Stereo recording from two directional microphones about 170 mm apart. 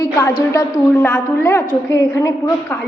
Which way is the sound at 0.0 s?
20° left (ahead or behind).